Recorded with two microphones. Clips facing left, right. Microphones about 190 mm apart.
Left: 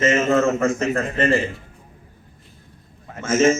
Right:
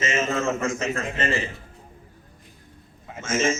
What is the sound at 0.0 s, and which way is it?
Speech, 55° left (ahead or behind).